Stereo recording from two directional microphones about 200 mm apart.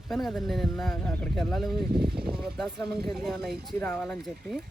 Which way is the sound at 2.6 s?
Centre (ahead or behind).